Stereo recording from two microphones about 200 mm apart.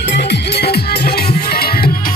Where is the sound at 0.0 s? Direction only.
60° left (ahead or behind).